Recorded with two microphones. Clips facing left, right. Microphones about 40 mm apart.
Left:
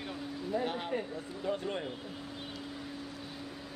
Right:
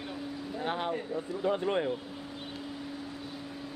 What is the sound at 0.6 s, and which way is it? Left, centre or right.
A man's voice, right.